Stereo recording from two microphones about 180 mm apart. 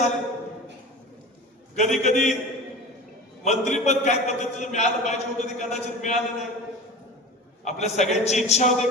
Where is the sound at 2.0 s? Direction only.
40° left (ahead or behind).